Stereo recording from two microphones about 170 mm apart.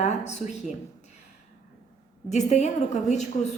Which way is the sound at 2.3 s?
45° left (ahead or behind).